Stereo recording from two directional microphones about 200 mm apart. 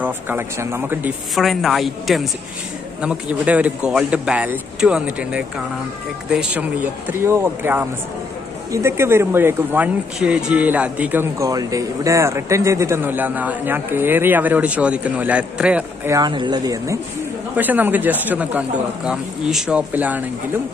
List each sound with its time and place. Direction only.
0.0 s speech: 10° right (ahead or behind)
1.3 s speech: centre (ahead or behind)
16.2 s speech: 20° right (ahead or behind)